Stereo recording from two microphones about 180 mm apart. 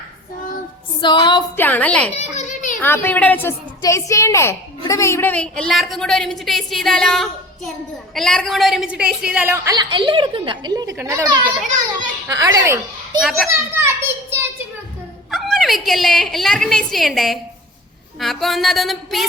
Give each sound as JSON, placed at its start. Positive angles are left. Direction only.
{"t": 1.0, "sound": "a sound", "side_deg": 25}
{"t": 1.5, "sound": "a woman's voice", "side_deg": 10}
{"t": 2.1, "sound": "children playing", "side_deg": 40}
{"t": 2.8, "sound": "a woman's voice", "side_deg": 10}
{"t": 10.9, "sound": "a woman's voice", "side_deg": -15}
{"t": 11.9, "sound": "children playing", "side_deg": -20}
{"t": 15.3, "sound": "a sound", "side_deg": 0}
{"t": 15.9, "sound": "a child's voice", "side_deg": 0}